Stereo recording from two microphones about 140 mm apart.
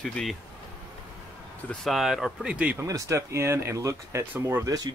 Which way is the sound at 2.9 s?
20° right (ahead or behind).